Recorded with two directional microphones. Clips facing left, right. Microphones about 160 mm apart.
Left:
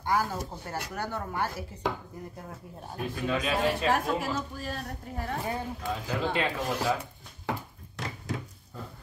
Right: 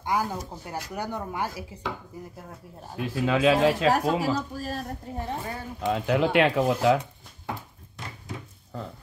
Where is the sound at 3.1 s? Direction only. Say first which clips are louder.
Right 8 dB; 90° right.